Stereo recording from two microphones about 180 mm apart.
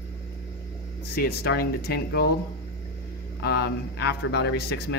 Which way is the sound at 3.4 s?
60° left (ahead or behind).